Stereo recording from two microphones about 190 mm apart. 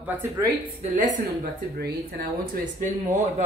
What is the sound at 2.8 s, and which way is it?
Speech, 40° right (ahead or behind).